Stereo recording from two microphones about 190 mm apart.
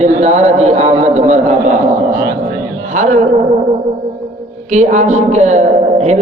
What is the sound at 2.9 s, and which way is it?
Speech, 40° right (ahead or behind).